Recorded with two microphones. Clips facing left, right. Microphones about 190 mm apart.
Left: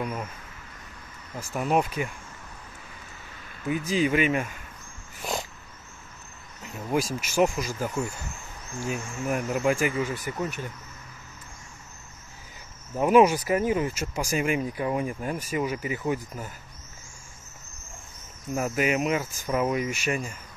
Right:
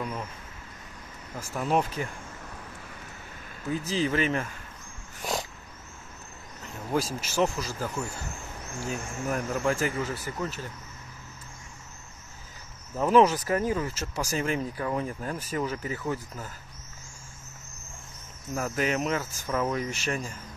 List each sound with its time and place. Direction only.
0.0 s speech: 10° left (ahead or behind)
1.5 s speech: 10° left (ahead or behind)
3.6 s speech: 15° left (ahead or behind)
5.2 s cat: centre (ahead or behind)
6.9 s speech: 10° left (ahead or behind)
8.9 s speech: 10° left (ahead or behind)
12.9 s speech: 10° left (ahead or behind)
18.5 s speech: 15° left (ahead or behind)